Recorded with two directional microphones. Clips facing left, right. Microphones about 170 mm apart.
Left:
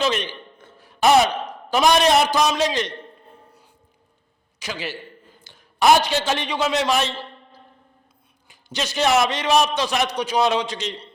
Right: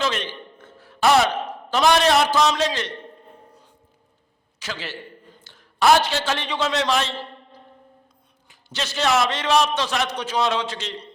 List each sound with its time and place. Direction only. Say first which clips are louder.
0.0 s a man's voice: left 3 dB; 15° left (ahead or behind)
4.6 s a man's voice: left 2 dB; 15° left (ahead or behind)
8.4 s a man's voice: left 2 dB; 15° left (ahead or behind)